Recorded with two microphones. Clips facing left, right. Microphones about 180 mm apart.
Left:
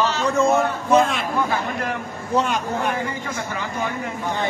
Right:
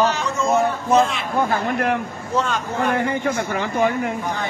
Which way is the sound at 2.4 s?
15° left (ahead or behind).